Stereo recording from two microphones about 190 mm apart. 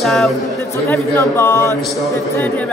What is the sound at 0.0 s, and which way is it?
Speech, centre (ahead or behind).